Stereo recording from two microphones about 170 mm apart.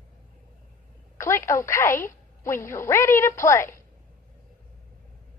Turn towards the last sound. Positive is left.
turn(degrees=15)  # may be behind; listen again after turning